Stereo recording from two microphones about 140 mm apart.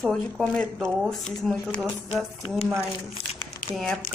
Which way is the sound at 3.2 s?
45° left (ahead or behind).